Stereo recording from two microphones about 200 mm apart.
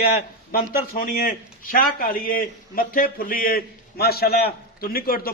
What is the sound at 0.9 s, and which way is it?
A man's voice, 45° left (ahead or behind).